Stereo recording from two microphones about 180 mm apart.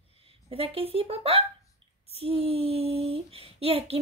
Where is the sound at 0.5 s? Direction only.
30° right (ahead or behind).